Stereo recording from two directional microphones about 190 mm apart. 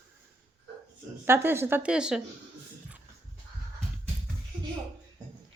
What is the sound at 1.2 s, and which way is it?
A woman's voice, 10° right (ahead or behind).